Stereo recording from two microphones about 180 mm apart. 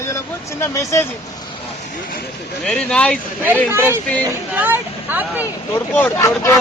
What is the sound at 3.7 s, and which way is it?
Speech, 15° right (ahead or behind).